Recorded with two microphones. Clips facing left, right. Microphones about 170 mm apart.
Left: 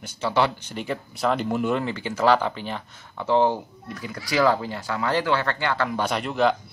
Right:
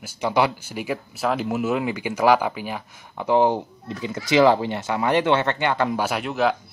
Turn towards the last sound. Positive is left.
turn(degrees=-5)  # may be behind; listen again after turning